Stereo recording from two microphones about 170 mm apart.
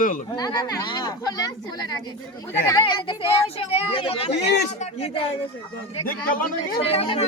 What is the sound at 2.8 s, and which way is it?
Speech, 30° left (ahead or behind).